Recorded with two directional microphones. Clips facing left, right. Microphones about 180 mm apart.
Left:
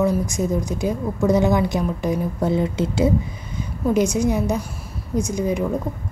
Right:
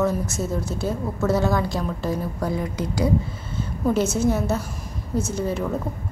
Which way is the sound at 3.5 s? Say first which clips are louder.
Left 2 dB; 15° left (ahead or behind).